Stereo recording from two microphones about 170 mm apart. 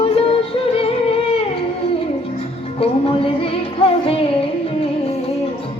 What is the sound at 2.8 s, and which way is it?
Music, 35° left (ahead or behind).